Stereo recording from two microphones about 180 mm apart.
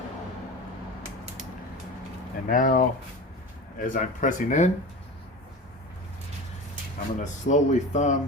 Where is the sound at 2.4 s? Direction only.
50° left (ahead or behind).